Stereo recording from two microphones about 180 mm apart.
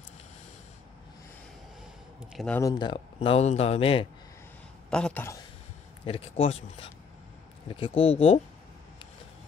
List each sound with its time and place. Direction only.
2.3 s speech: 5° left (ahead or behind)
2.6 s speech: 25° left (ahead or behind)
4.9 s speech: 5° left (ahead or behind)
6.0 s speech: 35° left (ahead or behind)